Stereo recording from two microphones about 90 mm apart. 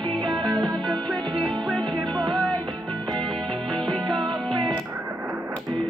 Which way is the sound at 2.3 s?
5° left (ahead or behind).